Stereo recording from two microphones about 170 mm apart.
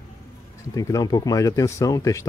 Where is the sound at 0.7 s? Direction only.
20° left (ahead or behind).